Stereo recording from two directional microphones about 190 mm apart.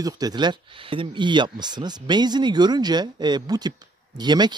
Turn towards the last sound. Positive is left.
turn(degrees=-20)  # may be behind; listen again after turning